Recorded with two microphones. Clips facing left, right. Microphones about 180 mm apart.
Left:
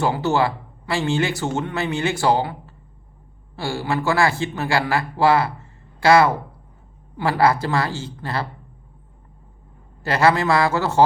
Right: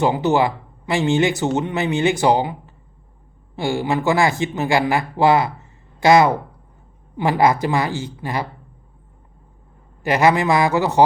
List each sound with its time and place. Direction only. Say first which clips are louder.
0.0 s speech: right 3 dB; 20° right (ahead or behind)
10.0 s speech: right 2 dB; 15° right (ahead or behind)